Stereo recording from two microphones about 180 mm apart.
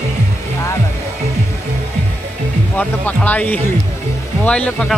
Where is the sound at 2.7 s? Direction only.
10° left (ahead or behind).